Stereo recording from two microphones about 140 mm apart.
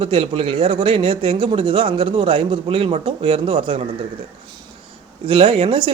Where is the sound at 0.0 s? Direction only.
40° right (ahead or behind).